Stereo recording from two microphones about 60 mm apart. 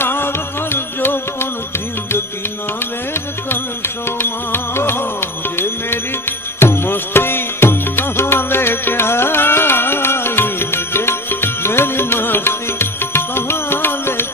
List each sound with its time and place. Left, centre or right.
0.0 s music: left
3.5 s music: left